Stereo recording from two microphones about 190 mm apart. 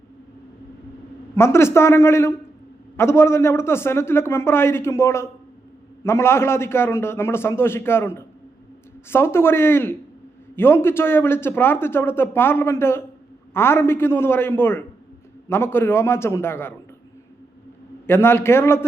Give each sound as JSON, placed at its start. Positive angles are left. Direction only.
{"t": 1.4, "sound": "a man's voice", "side_deg": 15}
{"t": 18.0, "sound": "a man's voice", "side_deg": 10}